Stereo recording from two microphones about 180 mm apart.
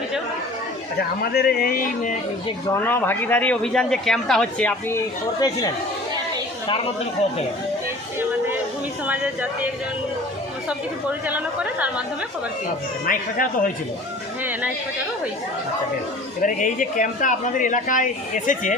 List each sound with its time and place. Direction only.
0.9 s a man's voice: 60° left (ahead or behind)
2.8 s a man's voice: 10° left (ahead or behind)
9.0 s speech: 10° right (ahead or behind)
11.3 s speech: 10° right (ahead or behind)
13.1 s a man's voice: 50° left (ahead or behind)
16.4 s a man's voice: 45° left (ahead or behind)